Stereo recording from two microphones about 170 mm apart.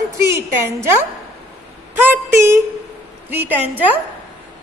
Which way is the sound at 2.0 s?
15° right (ahead or behind).